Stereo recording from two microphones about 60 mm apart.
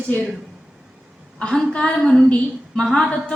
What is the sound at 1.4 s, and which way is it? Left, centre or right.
Speech, centre.